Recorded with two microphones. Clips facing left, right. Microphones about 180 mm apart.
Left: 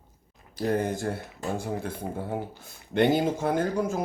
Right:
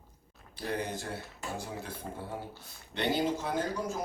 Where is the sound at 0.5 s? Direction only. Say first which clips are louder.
Left 8 dB; 45° left (ahead or behind).